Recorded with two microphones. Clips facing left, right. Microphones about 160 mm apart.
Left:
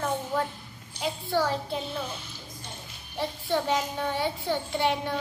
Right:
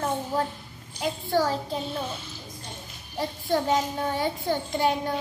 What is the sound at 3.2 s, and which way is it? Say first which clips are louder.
A child's voice: right 2 dB; 40° right (ahead or behind).